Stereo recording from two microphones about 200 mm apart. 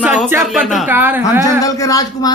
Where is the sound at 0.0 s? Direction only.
Centre (ahead or behind).